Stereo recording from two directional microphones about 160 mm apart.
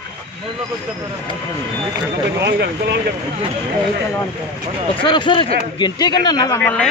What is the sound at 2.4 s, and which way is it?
Speech, 90° right.